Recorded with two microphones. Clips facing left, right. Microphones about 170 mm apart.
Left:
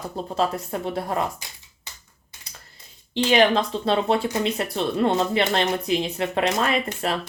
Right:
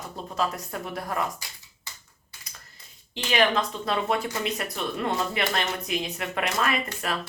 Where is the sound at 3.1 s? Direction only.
30° left (ahead or behind).